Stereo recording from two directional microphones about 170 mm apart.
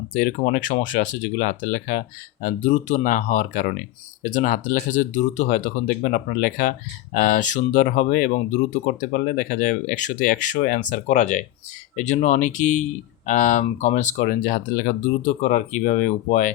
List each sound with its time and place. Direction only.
0.1 s speech: 55° left (ahead or behind)